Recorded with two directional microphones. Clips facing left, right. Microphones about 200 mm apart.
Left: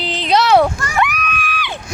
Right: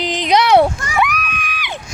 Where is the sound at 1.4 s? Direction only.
15° right (ahead or behind).